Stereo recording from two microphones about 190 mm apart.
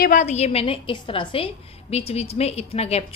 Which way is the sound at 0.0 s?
40° left (ahead or behind).